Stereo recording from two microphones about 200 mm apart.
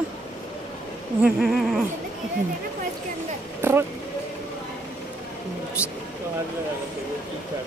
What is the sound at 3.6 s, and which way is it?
Speech, 10° right (ahead or behind).